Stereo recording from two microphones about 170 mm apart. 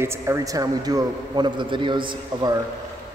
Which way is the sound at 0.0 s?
15° right (ahead or behind).